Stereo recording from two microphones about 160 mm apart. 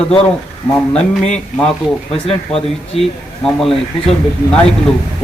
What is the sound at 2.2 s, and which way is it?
Speech, 35° left (ahead or behind).